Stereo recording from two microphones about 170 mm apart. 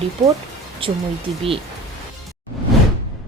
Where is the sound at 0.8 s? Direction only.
30° right (ahead or behind).